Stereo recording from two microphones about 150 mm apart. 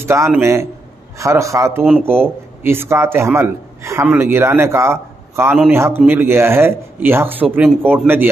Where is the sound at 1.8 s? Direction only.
Centre (ahead or behind).